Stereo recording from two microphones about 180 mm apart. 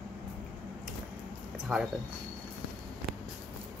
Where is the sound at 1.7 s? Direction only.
Centre (ahead or behind).